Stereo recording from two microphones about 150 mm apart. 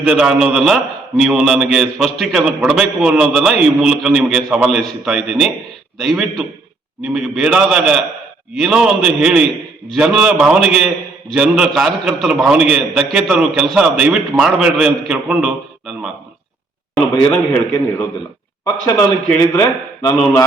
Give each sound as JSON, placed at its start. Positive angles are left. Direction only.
{"t": 0.0, "sound": "a man's voice", "side_deg": -5}
{"t": 16.9, "sound": "a man's voice", "side_deg": 5}
{"t": 18.6, "sound": "a man's voice", "side_deg": 20}